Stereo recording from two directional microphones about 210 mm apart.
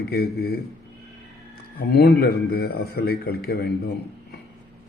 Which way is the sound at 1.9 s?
50° left (ahead or behind).